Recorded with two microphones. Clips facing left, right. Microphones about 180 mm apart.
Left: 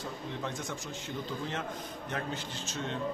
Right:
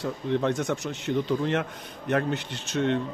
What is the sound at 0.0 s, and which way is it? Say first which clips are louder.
A man's voice: right 12 dB; 70° right (ahead or behind).